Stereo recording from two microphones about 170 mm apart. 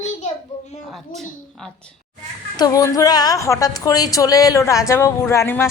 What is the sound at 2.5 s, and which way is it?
A woman's voice, 20° left (ahead or behind).